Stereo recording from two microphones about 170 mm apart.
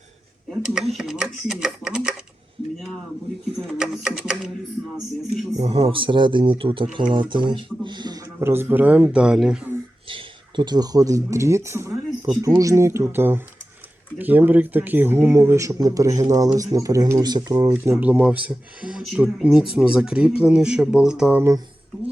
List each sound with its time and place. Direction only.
0.5 s speech: 5° right (ahead or behind)
3.8 s speech: 5° right (ahead or behind)
5.6 s speech: 35° right (ahead or behind); by 9.7 s 5° right (ahead or behind)
10.1 s speech: 30° right (ahead or behind)
17.9 s speech: 10° right (ahead or behind)